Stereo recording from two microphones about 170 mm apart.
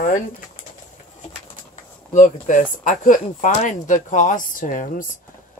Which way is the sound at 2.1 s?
50° left (ahead or behind).